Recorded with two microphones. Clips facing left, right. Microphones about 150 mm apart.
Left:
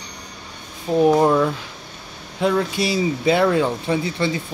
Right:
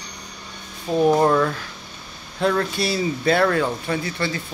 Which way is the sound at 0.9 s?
10° left (ahead or behind).